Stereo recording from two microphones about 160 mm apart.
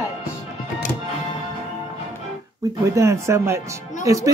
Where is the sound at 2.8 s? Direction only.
20° right (ahead or behind).